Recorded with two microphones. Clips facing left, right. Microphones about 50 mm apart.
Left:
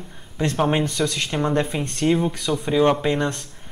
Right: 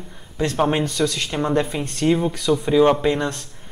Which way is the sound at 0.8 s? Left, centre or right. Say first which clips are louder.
Right 2 dB; left.